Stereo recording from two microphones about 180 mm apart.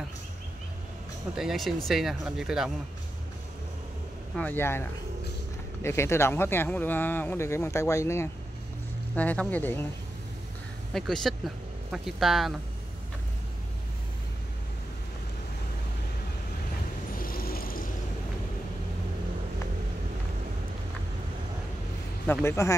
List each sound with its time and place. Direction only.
1.3 s speech: centre (ahead or behind)
4.4 s speech: 10° left (ahead or behind)
10.9 s speech: centre (ahead or behind)
17.2 s vehicle: 55° left (ahead or behind)
22.2 s speech: 10° left (ahead or behind)